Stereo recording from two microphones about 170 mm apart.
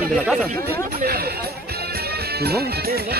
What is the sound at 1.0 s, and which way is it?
Speech, 65° right (ahead or behind).